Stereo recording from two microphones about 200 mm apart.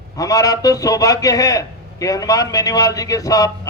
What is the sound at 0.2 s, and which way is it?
A man's voice, 20° left (ahead or behind).